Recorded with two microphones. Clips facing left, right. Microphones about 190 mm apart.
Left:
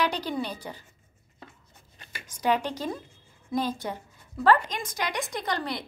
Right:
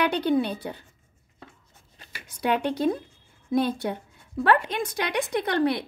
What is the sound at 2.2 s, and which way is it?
A woman's voice, 65° right (ahead or behind).